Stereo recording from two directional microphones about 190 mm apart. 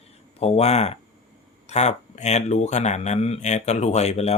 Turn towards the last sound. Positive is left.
turn(degrees=35)  # may be behind; listen again after turning